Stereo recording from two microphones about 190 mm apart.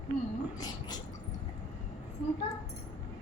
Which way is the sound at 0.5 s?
20° left (ahead or behind).